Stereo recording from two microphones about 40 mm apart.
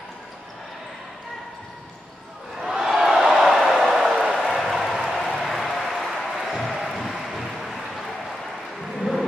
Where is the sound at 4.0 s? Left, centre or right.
Centre.